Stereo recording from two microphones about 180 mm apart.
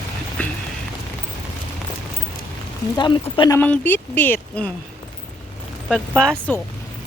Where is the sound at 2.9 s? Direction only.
25° left (ahead or behind).